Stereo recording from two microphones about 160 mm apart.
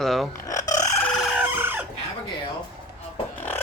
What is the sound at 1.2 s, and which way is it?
Chicken, 5° right (ahead or behind).